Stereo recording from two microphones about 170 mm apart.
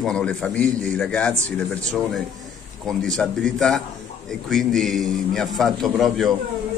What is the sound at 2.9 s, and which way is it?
A man's voice, 5° left (ahead or behind).